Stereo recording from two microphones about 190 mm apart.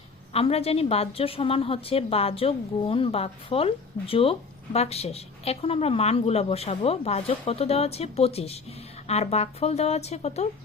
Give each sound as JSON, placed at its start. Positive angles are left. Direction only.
{"t": 0.3, "sound": "a woman's voice", "side_deg": 30}